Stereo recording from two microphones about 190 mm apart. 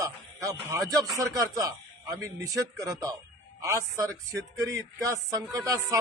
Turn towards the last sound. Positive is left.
turn(degrees=-15)  # may be behind; listen again after turning